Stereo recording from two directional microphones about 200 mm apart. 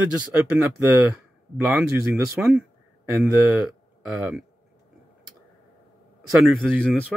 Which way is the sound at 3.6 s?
5° right (ahead or behind).